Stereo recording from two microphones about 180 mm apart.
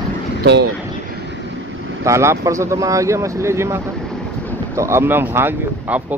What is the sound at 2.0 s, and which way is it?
Speech, 15° right (ahead or behind).